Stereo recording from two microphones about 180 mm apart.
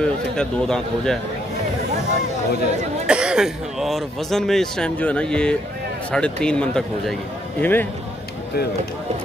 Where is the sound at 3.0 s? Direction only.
5° right (ahead or behind).